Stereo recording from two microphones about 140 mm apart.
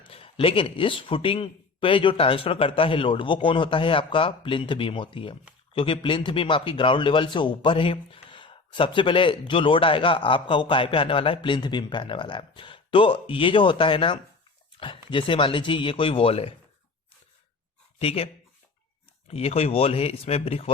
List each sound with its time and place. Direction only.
0.0 s speech: 40° left (ahead or behind)
14.8 s a sound: 35° left (ahead or behind)
15.1 s speech: 35° left (ahead or behind)
18.0 s speech: 45° left (ahead or behind)
19.3 s speech: 45° left (ahead or behind)